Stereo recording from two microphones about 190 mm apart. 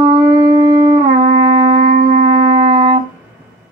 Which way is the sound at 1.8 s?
50° right (ahead or behind).